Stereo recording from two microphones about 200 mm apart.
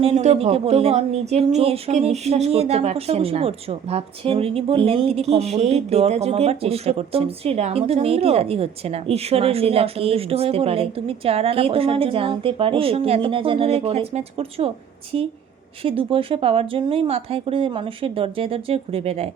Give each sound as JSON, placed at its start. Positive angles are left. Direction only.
{"t": 0.0, "sound": "speech", "side_deg": -30}
{"t": 15.8, "sound": "speech", "side_deg": -25}